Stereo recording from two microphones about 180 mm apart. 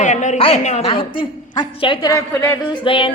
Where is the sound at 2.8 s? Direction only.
30° left (ahead or behind).